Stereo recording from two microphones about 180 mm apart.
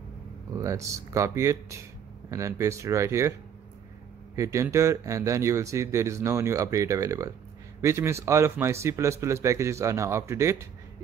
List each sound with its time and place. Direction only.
0.6 s speech: 15° right (ahead or behind)
4.4 s speech: 15° right (ahead or behind)